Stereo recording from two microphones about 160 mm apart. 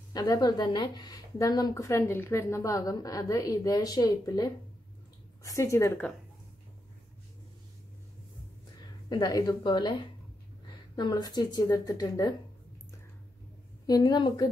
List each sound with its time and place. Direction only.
0.1 s speech: 25° left (ahead or behind)
9.1 s speech: 25° left (ahead or behind)
11.0 s speech: 25° left (ahead or behind)
13.8 s speech: 25° left (ahead or behind)